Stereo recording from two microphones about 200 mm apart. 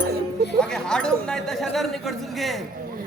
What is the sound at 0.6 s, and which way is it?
Speech, 5° left (ahead or behind).